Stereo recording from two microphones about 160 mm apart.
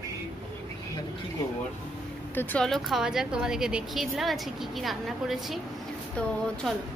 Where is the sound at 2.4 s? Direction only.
10° left (ahead or behind).